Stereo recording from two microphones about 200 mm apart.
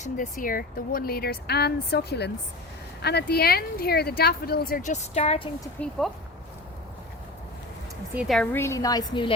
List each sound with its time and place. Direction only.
0.0 s a woman's voice: 45° left (ahead or behind)
5.8 s a woman's voice: 10° left (ahead or behind)
8.1 s speech: 5° right (ahead or behind)
8.5 s a woman's voice: 15° left (ahead or behind)